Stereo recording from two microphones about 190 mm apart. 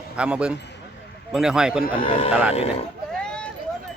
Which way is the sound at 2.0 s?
30° left (ahead or behind).